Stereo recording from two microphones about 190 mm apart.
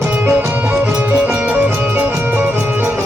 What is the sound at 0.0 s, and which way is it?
Music, 10° right (ahead or behind).